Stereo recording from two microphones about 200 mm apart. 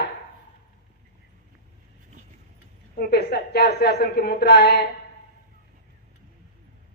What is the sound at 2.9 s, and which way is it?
A woman's voice, 50° left (ahead or behind).